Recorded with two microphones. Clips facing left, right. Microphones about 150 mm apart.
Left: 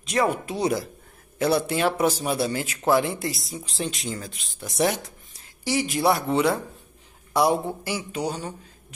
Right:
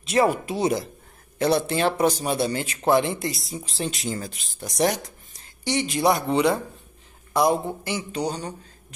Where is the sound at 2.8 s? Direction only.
20° right (ahead or behind).